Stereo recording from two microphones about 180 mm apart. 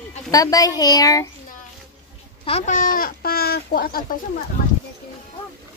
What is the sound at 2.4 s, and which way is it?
Speech, 40° left (ahead or behind).